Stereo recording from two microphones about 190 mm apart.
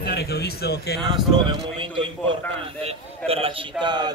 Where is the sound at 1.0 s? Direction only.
25° right (ahead or behind).